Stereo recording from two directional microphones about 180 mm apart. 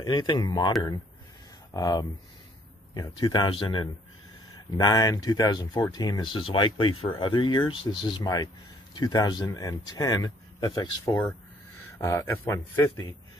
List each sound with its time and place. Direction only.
0.0 s a man's voice: 25° left (ahead or behind)